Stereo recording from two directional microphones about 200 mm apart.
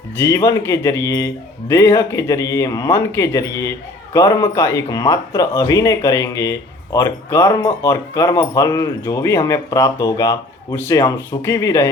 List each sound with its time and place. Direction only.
0.2 s a man's voice: 15° left (ahead or behind)